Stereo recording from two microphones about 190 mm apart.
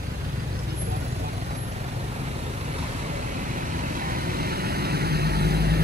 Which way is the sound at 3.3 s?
45° right (ahead or behind).